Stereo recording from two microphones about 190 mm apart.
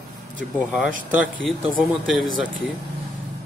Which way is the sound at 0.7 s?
5° right (ahead or behind).